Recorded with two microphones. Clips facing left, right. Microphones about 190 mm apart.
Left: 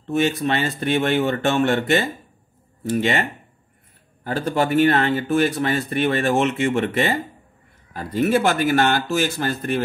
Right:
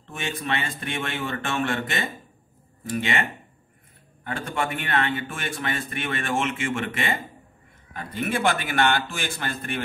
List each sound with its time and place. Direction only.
0.0 s speech: 35° left (ahead or behind)